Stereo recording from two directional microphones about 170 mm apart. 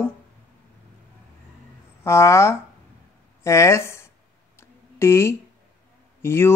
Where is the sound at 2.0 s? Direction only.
15° left (ahead or behind).